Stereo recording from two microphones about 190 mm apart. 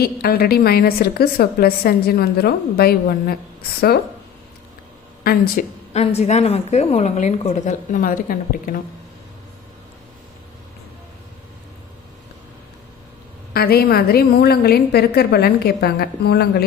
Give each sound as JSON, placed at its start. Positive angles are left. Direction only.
{"t": 0.0, "sound": "a woman's voice", "side_deg": 55}
{"t": 5.2, "sound": "speech", "side_deg": 50}
{"t": 5.9, "sound": "a woman's voice", "side_deg": 35}
{"t": 13.5, "sound": "a woman's voice", "side_deg": 55}